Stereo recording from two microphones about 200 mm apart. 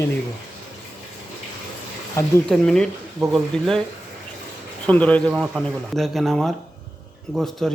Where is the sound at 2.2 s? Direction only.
15° left (ahead or behind).